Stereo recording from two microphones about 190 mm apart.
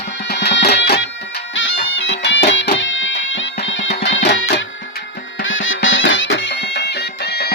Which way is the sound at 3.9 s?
65° left (ahead or behind).